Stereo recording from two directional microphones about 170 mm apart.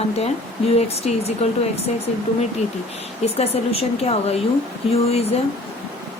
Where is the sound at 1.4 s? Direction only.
40° left (ahead or behind).